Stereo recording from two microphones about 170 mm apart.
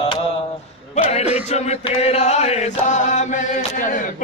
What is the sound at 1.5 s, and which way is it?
Chant, 40° left (ahead or behind).